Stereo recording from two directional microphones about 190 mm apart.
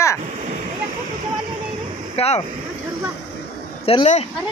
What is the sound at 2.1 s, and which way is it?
Speech, 35° left (ahead or behind).